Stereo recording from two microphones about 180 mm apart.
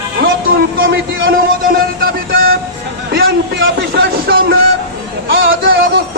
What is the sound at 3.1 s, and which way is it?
Speech, 80° right.